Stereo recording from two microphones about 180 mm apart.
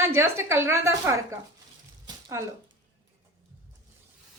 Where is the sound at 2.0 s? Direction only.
15° right (ahead or behind).